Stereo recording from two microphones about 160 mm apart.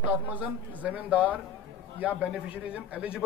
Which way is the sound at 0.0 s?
10° right (ahead or behind).